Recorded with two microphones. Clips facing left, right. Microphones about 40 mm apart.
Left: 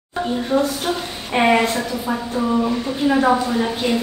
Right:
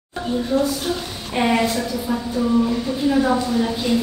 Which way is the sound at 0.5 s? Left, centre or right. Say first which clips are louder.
Left 1 dB; left.